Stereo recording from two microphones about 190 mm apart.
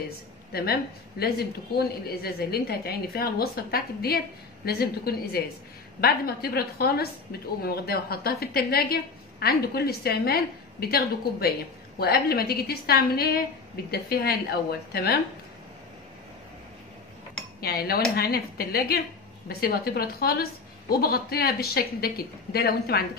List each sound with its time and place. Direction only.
0.5 s a woman's voice: 55° left (ahead or behind)
17.6 s a woman's voice: 55° left (ahead or behind)